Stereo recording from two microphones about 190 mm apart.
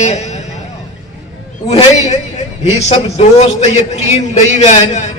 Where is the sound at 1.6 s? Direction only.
35° left (ahead or behind).